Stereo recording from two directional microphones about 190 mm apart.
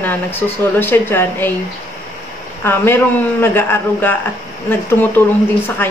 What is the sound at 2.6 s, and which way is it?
Speech, 10° left (ahead or behind).